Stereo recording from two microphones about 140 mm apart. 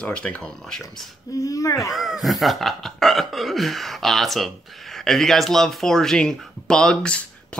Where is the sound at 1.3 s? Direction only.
25° left (ahead or behind).